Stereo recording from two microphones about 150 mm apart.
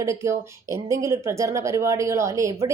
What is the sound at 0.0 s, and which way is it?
A woman's voice, 20° right (ahead or behind).